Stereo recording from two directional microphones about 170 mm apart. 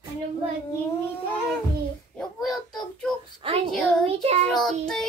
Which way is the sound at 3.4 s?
30° right (ahead or behind).